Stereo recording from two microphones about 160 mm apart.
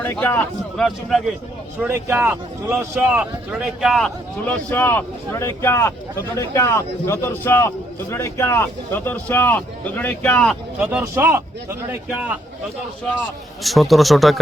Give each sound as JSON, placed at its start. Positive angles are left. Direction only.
{"t": 0.0, "sound": "speech", "side_deg": 15}
{"t": 1.8, "sound": "speech", "side_deg": -15}
{"t": 4.4, "sound": "speech", "side_deg": 10}
{"t": 10.8, "sound": "speech", "side_deg": -5}
{"t": 13.6, "sound": "a man's voice", "side_deg": 0}